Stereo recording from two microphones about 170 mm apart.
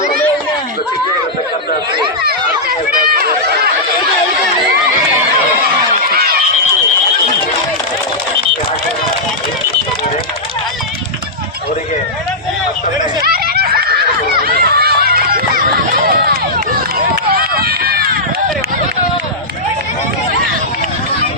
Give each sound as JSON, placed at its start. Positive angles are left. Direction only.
{"t": 2.2, "sound": "chatter", "side_deg": -60}
{"t": 13.2, "sound": "a sound", "side_deg": -60}
{"t": 17.3, "sound": "run", "side_deg": -65}